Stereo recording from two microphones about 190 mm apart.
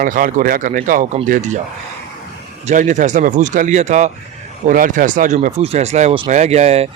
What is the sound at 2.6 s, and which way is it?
A man's voice, 40° right (ahead or behind).